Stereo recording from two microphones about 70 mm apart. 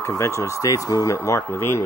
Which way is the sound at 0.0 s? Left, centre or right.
Left.